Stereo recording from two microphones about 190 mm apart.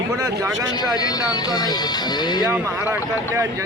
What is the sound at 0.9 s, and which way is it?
Speech, 20° left (ahead or behind).